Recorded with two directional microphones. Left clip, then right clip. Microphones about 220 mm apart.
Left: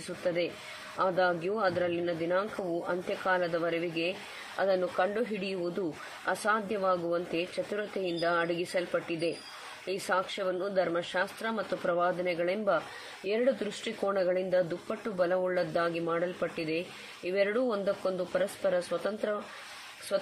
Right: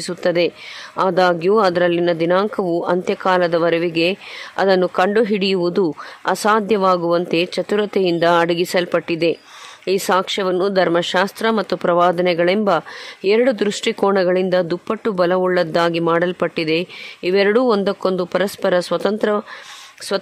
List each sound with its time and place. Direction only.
0.9 s speech: 50° right (ahead or behind)